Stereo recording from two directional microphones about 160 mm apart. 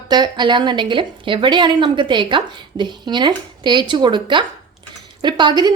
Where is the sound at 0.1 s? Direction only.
25° right (ahead or behind).